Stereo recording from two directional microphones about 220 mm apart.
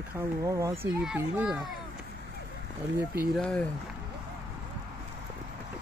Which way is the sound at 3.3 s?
5° left (ahead or behind).